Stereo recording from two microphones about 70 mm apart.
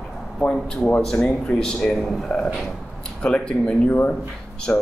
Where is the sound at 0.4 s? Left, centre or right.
Centre.